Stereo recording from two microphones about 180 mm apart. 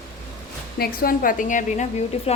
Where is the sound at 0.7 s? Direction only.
55° left (ahead or behind); by 2.4 s 40° left (ahead or behind).